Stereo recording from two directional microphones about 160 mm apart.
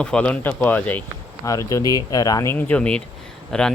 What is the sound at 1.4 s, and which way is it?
Speech, 20° left (ahead or behind).